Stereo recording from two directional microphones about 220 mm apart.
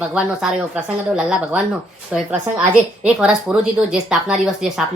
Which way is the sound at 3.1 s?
5° right (ahead or behind).